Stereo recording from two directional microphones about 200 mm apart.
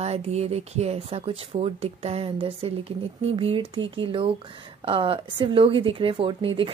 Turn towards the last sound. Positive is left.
turn(degrees=-25)  # may be behind; listen again after turning